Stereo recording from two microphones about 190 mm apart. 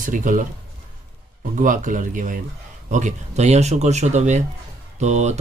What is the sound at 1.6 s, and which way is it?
Speech, 45° right (ahead or behind).